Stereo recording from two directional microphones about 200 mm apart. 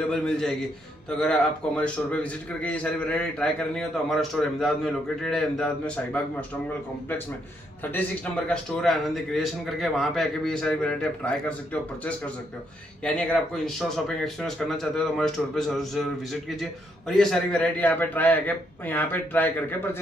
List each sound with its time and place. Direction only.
0.1 s a man's voice: 5° left (ahead or behind)
1.8 s a man's voice: 5° left (ahead or behind)
7.9 s a man's voice: 5° left (ahead or behind)